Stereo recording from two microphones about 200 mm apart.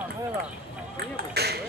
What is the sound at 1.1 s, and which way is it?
Ping, 55° right (ahead or behind).